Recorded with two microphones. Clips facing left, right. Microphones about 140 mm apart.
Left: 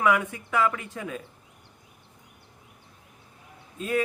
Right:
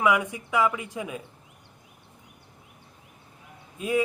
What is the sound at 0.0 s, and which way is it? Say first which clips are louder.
A man's voice: even; 15° right (ahead or behind).